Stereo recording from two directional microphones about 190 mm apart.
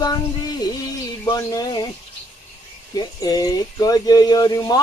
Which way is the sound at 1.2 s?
20° left (ahead or behind).